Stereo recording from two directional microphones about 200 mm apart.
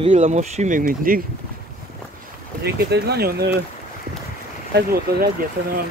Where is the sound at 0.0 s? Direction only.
35° right (ahead or behind).